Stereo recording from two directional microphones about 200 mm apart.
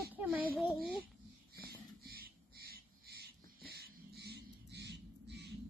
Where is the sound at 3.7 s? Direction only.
55° right (ahead or behind).